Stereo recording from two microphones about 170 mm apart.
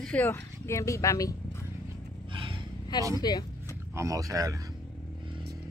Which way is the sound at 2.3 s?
30° right (ahead or behind).